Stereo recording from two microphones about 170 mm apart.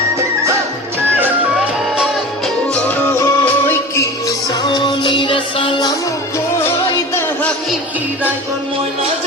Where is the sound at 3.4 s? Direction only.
15° left (ahead or behind).